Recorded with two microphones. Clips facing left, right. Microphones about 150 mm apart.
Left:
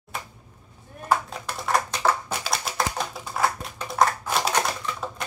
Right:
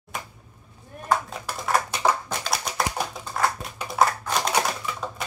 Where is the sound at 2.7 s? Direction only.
5° left (ahead or behind).